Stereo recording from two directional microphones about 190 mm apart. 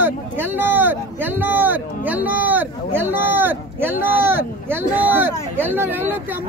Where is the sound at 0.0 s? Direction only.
10° right (ahead or behind).